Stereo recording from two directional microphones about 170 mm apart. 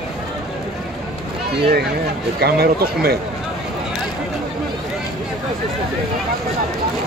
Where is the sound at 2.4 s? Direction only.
65° right (ahead or behind).